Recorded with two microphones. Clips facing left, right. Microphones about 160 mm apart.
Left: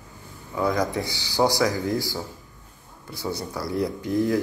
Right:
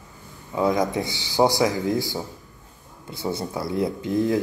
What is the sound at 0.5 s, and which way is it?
Speech, 20° right (ahead or behind).